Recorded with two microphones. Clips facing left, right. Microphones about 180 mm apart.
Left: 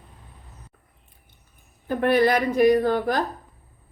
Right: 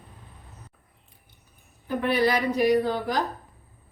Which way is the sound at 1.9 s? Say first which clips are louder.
Left 4 dB; 55° left (ahead or behind).